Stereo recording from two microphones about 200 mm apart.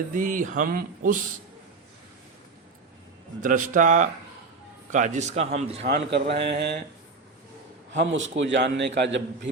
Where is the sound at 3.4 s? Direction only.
40° right (ahead or behind).